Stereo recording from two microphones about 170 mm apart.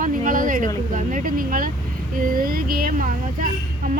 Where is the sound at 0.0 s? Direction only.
55° right (ahead or behind).